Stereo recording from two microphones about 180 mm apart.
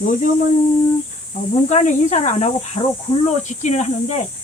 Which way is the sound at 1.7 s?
40° left (ahead or behind).